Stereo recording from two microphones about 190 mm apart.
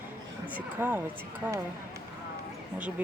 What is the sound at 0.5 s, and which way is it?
Speech, 10° right (ahead or behind).